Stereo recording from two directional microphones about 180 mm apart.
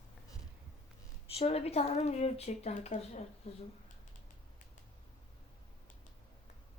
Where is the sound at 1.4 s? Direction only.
35° left (ahead or behind).